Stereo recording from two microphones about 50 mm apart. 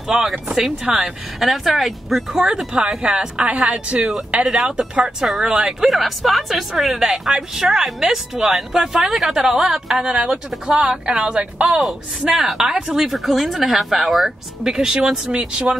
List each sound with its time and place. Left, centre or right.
0.1 s speech: centre
1.4 s speech: centre; by 4.6 s right
4.6 s speech: centre
10.0 s speech: centre
11.8 s speech: centre